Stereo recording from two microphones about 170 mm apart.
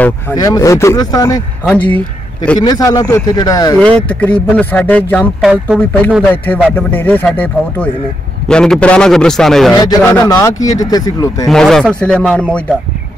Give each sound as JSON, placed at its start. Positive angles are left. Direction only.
{"t": 0.0, "sound": "speech", "side_deg": 20}
{"t": 1.7, "sound": "speech", "side_deg": 10}
{"t": 2.6, "sound": "speech", "side_deg": 25}
{"t": 4.1, "sound": "speech", "side_deg": 10}
{"t": 5.7, "sound": "a man's voice", "side_deg": -5}
{"t": 6.3, "sound": "a man's voice", "side_deg": 10}
{"t": 10.0, "sound": "speech", "side_deg": 15}
{"t": 11.4, "sound": "a man's voice", "side_deg": 0}